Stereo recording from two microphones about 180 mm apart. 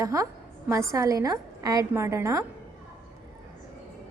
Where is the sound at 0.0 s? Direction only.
15° right (ahead or behind).